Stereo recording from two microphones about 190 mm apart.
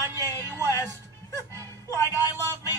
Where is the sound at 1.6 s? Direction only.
15° left (ahead or behind).